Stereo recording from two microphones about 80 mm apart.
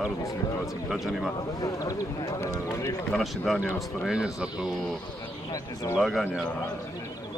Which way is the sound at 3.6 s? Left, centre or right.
Centre.